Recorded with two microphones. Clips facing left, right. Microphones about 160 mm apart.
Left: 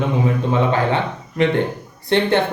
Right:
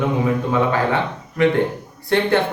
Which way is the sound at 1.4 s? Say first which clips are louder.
Right 1 dB; 25° left (ahead or behind).